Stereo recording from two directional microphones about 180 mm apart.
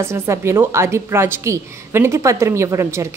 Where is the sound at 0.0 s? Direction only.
15° right (ahead or behind).